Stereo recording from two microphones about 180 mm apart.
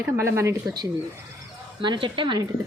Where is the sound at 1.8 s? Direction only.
25° right (ahead or behind).